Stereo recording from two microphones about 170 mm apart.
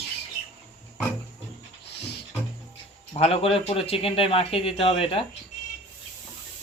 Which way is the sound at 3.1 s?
35° left (ahead or behind).